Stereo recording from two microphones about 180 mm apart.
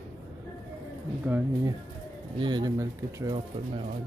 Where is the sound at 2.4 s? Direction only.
25° right (ahead or behind).